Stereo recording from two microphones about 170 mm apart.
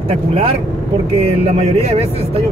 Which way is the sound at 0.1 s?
35° right (ahead or behind).